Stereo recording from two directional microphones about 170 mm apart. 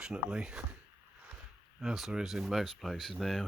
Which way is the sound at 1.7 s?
Centre (ahead or behind).